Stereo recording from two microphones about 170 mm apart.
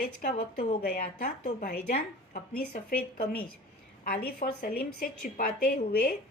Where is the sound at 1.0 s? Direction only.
55° left (ahead or behind).